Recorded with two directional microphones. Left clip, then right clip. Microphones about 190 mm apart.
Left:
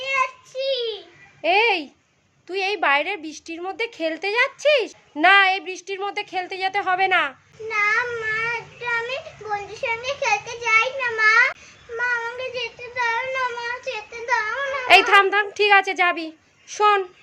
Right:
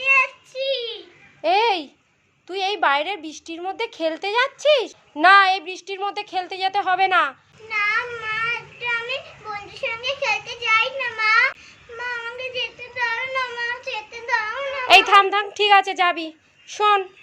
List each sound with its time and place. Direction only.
0.0 s child singing: 20° left (ahead or behind)
1.4 s a sound: 5° left (ahead or behind)
2.5 s a woman's voice: 10° left (ahead or behind)
7.7 s child singing: 15° left (ahead or behind)
14.8 s a woman's voice: 5° left (ahead or behind)